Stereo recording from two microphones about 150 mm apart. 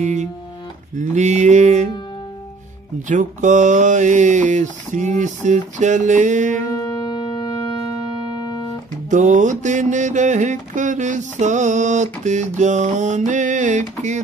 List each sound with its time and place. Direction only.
0.0 s mantra: 55° right (ahead or behind)
3.1 s speech: 55° right (ahead or behind)
6.7 s music: 20° left (ahead or behind)
9.1 s mantra: 55° right (ahead or behind)